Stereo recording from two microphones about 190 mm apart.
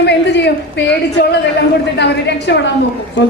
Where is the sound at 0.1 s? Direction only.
65° left (ahead or behind).